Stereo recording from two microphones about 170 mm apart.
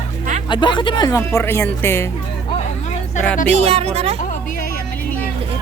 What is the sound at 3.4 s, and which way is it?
Speech, 35° right (ahead or behind).